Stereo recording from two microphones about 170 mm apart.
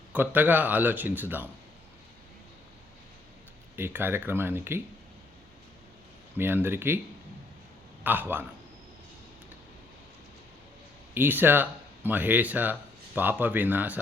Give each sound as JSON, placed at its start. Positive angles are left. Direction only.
{"t": 0.1, "sound": "speech", "side_deg": -10}
{"t": 3.8, "sound": "speech", "side_deg": -10}
{"t": 6.3, "sound": "speech", "side_deg": -10}
{"t": 8.0, "sound": "speech", "side_deg": -10}
{"t": 11.1, "sound": "speech", "side_deg": -10}